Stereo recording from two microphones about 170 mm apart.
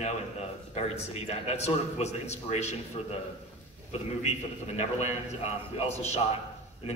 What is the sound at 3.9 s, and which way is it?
Speech, 40° left (ahead or behind).